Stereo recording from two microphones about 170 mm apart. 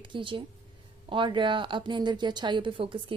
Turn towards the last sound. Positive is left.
turn(degrees=-30)  # may be behind; listen again after turning